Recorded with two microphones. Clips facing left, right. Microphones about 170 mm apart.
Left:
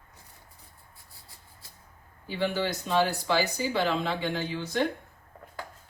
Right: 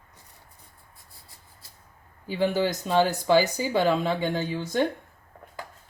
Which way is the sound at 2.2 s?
45° right (ahead or behind).